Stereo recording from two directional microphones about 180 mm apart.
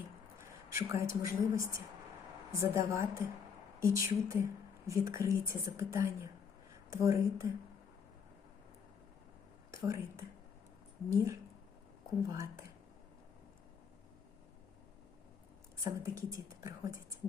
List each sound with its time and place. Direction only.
0.3 s speech: 15° right (ahead or behind)
9.7 s speech: 15° right (ahead or behind)
12.3 s speech: 20° right (ahead or behind)
15.8 s speech: 15° right (ahead or behind)